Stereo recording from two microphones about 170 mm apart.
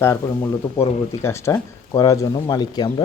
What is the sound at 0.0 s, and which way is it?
Speech, 15° left (ahead or behind).